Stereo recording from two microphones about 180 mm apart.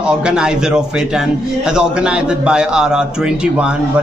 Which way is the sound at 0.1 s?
5° right (ahead or behind).